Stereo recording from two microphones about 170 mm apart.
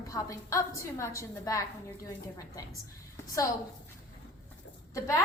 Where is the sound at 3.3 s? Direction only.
20° left (ahead or behind).